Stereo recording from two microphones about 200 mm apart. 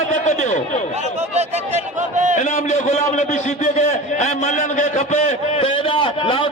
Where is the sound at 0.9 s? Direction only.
35° right (ahead or behind).